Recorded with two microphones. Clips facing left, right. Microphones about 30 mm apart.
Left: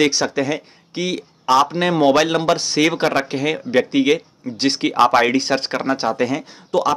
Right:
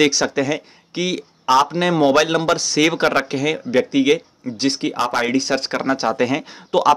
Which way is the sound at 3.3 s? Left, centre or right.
Left.